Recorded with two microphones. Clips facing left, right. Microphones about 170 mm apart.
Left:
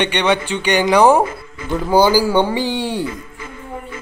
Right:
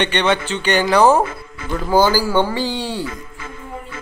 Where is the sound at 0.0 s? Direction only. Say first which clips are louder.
Left 1 dB; 10° left (ahead or behind).